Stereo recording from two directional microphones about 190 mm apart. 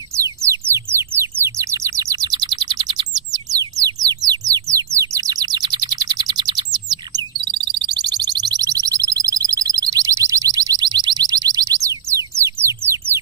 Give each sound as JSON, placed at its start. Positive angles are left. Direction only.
{"t": 0.1, "sound": "bird", "side_deg": -15}
{"t": 8.4, "sound": "alarm", "side_deg": -20}